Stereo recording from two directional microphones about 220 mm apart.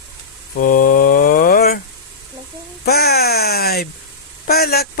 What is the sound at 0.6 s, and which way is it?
Mantra, 40° left (ahead or behind).